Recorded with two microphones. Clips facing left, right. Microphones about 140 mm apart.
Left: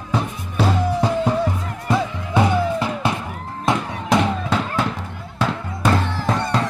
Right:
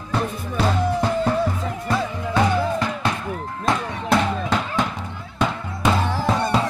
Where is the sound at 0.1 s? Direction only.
10° left (ahead or behind).